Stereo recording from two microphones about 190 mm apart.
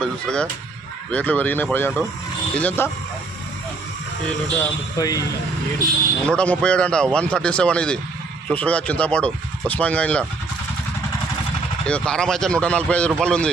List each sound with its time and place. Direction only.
0.0 s speech: 5° left (ahead or behind)
4.5 s speech: 20° left (ahead or behind)
6.2 s speech: 5° left (ahead or behind)
11.9 s speech: 5° left (ahead or behind)